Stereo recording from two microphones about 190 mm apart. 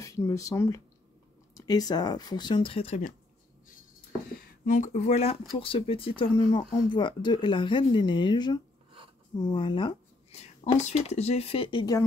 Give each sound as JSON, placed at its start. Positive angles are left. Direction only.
{"t": 0.0, "sound": "speech", "side_deg": 15}
{"t": 4.6, "sound": "speech", "side_deg": 40}